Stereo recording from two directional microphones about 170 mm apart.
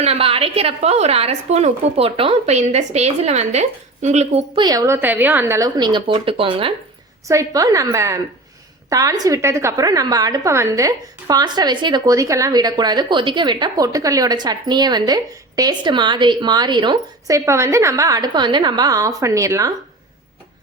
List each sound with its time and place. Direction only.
0.0 s a woman's voice: 35° right (ahead or behind)
4.5 s a woman's voice: 25° right (ahead or behind)
7.3 s a woman's voice: 20° right (ahead or behind)